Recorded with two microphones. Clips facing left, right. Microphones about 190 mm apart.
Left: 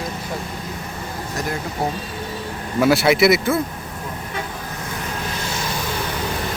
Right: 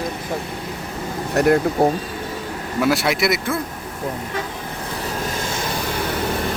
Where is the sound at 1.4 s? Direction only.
65° right (ahead or behind).